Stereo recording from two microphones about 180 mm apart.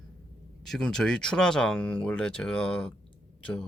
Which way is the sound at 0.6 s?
5° left (ahead or behind).